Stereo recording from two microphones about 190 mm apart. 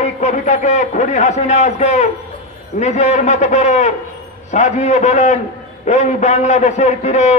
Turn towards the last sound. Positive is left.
turn(degrees=35)  # may be behind; listen again after turning